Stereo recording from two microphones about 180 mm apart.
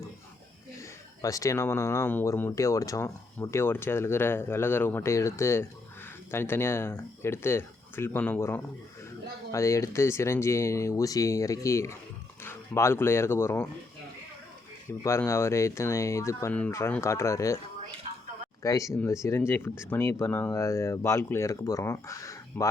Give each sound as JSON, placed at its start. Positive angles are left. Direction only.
{"t": 0.8, "sound": "speech", "side_deg": 15}
{"t": 15.0, "sound": "speech", "side_deg": 15}
{"t": 18.6, "sound": "speech", "side_deg": 15}